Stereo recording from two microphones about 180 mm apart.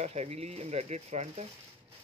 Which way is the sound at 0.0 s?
35° right (ahead or behind).